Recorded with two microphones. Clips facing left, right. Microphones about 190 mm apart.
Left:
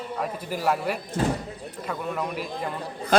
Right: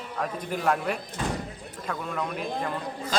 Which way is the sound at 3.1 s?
60° left (ahead or behind).